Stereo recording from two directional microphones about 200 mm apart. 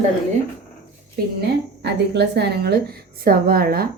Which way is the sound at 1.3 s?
55° right (ahead or behind).